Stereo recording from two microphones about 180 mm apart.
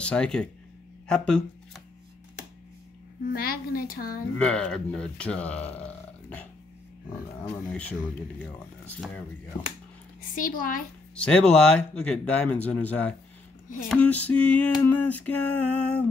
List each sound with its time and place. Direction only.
0.0 s speech: 5° left (ahead or behind)
3.3 s a woman's voice: 55° left (ahead or behind)
4.4 s speech: 5° left (ahead or behind)
7.4 s a sound: 10° left (ahead or behind)
10.4 s a woman's voice: 50° left (ahead or behind)
11.2 s a sound: 5° left (ahead or behind)